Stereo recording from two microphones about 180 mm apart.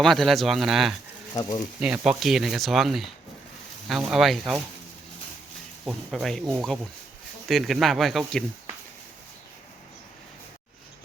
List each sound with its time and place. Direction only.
0.0 s speech: centre (ahead or behind)
1.3 s speech: 20° left (ahead or behind)
1.8 s speech: 5° right (ahead or behind)
5.8 s speech: centre (ahead or behind)